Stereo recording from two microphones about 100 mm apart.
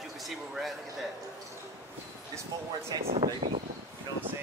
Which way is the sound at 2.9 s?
45° right (ahead or behind).